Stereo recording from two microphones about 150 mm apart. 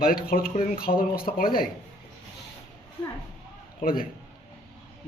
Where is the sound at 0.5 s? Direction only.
60° left (ahead or behind); by 1.2 s 85° left.